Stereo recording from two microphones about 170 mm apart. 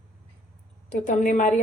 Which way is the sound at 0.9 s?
50° left (ahead or behind).